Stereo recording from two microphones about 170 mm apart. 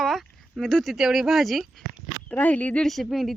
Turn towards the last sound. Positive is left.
turn(degrees=0)  # may be behind; listen again after turning